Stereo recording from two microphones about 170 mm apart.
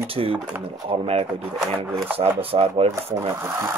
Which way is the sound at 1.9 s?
15° right (ahead or behind).